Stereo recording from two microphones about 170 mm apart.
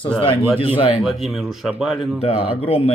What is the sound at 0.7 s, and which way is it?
Speech, 30° left (ahead or behind).